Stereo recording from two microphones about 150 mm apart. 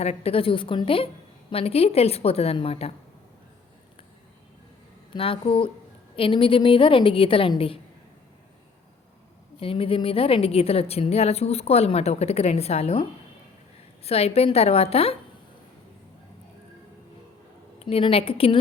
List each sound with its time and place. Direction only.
0.0 s a woman's voice: 45° left (ahead or behind)
5.1 s a woman's voice: 35° left (ahead or behind)
9.6 s a woman's voice: 40° left (ahead or behind)
17.7 s a woman's voice: 40° left (ahead or behind)